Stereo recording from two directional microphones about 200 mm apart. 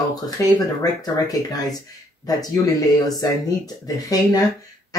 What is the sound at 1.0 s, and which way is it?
Speech, 20° left (ahead or behind).